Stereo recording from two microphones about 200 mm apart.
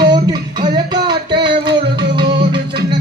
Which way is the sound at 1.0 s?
25° right (ahead or behind).